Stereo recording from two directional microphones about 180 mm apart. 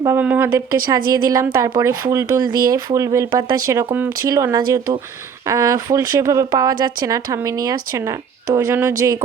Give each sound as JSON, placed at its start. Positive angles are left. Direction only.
{"t": 0.0, "sound": "speech", "side_deg": -10}